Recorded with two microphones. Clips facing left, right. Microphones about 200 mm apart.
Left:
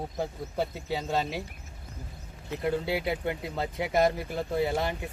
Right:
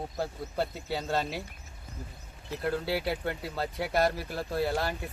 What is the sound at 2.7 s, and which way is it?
Speech, 15° left (ahead or behind).